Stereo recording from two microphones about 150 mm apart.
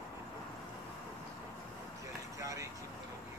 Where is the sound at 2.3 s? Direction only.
20° right (ahead or behind).